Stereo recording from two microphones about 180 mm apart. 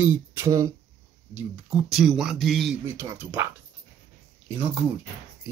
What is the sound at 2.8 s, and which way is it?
Speech, 10° right (ahead or behind).